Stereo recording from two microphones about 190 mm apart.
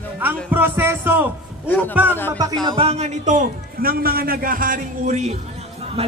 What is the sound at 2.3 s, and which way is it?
A man's voice, 20° right (ahead or behind).